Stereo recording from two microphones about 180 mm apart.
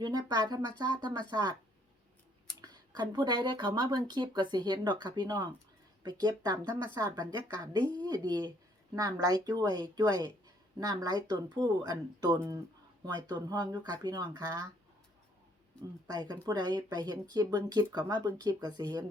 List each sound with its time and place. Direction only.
0.0 s speech: 20° right (ahead or behind)
2.6 s speech: 25° right (ahead or behind)
16.0 s speech: 20° right (ahead or behind)